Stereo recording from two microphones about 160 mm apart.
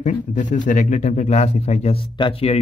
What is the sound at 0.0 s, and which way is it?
Speech, 50° left (ahead or behind).